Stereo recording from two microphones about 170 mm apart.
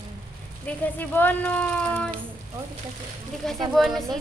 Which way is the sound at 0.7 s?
10° left (ahead or behind).